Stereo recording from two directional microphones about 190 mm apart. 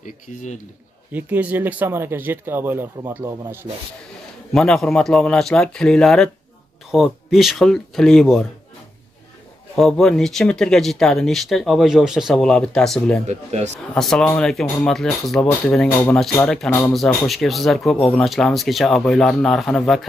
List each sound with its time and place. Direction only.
0.0 s a man's voice: 40° left (ahead or behind)
1.1 s speech: 10° right (ahead or behind)
4.5 s speech: centre (ahead or behind)
9.8 s speech: centre (ahead or behind)
13.3 s speech: 35° right (ahead or behind)
13.9 s speech: centre (ahead or behind)